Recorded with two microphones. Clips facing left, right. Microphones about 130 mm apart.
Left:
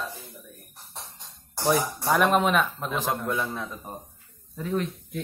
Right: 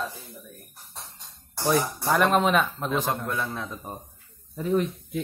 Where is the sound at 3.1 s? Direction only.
10° left (ahead or behind).